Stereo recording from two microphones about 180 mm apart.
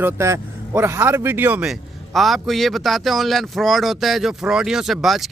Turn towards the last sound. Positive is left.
turn(degrees=0)  # may be behind; listen again after turning